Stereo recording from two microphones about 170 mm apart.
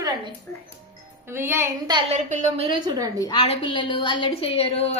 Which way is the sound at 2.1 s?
40° right (ahead or behind).